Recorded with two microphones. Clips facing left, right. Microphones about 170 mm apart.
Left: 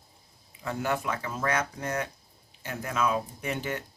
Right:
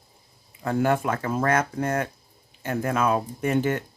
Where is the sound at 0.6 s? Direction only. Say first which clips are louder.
Right 7 dB; 50° right (ahead or behind).